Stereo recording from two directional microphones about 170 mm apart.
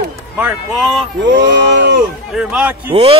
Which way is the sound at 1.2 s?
90° right.